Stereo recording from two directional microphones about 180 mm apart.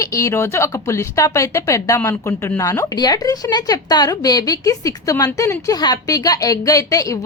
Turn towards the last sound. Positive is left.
turn(degrees=20)  # may be behind; listen again after turning